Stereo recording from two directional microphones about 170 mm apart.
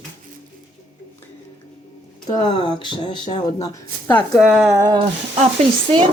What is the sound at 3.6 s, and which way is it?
Speech, 20° left (ahead or behind).